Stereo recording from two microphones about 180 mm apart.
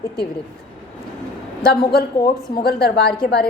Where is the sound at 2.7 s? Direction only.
60° left (ahead or behind).